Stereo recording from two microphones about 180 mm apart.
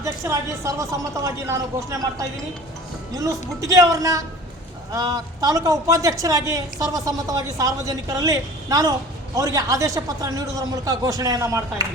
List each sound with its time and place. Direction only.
0.0 s a man's voice: 15° right (ahead or behind)